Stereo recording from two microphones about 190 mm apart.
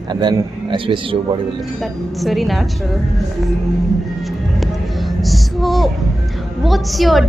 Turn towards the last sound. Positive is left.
turn(degrees=0)  # may be behind; listen again after turning